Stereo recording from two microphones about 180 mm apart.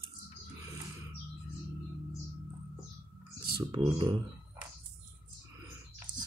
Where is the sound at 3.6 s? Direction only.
25° right (ahead or behind).